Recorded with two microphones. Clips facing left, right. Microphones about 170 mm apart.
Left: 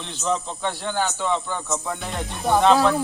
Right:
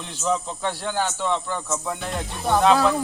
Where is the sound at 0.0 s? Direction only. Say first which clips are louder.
Even; 5° right (ahead or behind).